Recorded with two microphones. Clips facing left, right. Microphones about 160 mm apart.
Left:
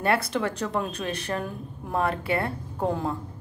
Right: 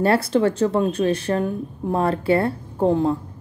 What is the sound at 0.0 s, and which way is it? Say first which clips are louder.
A woman's voice: right 7 dB; 30° right (ahead or behind).